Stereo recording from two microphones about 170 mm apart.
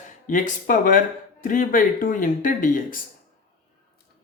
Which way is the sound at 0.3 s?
45° left (ahead or behind).